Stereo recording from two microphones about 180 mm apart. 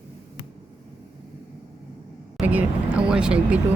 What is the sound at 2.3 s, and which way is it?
Vehicle, 10° right (ahead or behind).